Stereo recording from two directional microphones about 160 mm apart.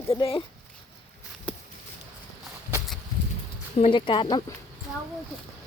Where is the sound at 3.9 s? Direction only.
30° left (ahead or behind).